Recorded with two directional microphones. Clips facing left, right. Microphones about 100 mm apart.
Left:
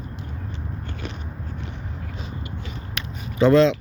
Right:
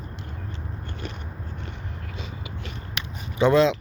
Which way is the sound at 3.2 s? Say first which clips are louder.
Left 3 dB; 20° right (ahead or behind).